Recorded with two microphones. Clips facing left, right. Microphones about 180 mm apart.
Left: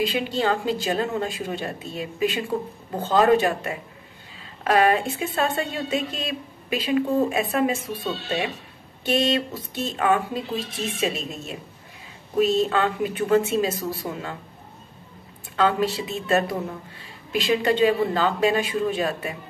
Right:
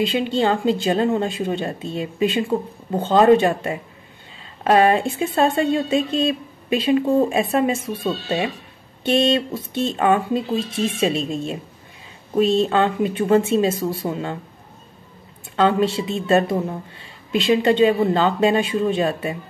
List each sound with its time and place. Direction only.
0.0 s a woman's voice: 25° right (ahead or behind)
9.0 s a woman's voice: 25° right (ahead or behind)
15.5 s a woman's voice: 25° right (ahead or behind)